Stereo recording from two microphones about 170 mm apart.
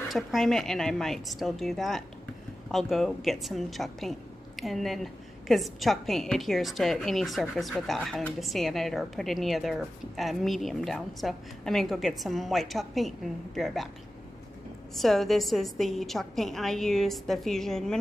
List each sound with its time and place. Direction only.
0.1 s a woman's voice: centre (ahead or behind)
15.0 s a woman's voice: centre (ahead or behind)